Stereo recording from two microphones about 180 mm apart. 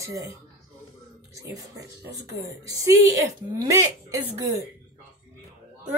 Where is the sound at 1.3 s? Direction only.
20° right (ahead or behind).